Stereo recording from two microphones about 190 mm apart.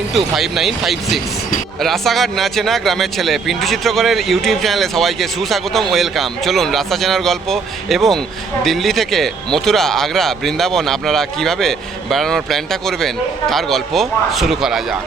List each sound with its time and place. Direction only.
0.1 s speech: centre (ahead or behind)